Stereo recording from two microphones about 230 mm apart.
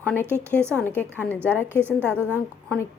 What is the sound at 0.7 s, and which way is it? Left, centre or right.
Speech, centre.